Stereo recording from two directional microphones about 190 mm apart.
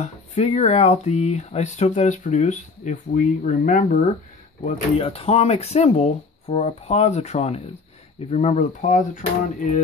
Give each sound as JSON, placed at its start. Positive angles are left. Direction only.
{"t": 0.0, "sound": "speech", "side_deg": 35}